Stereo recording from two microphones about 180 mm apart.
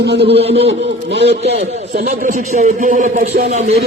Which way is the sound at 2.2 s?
45° right (ahead or behind).